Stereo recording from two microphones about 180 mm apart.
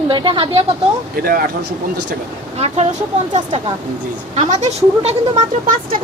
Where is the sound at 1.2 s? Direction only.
55° right (ahead or behind).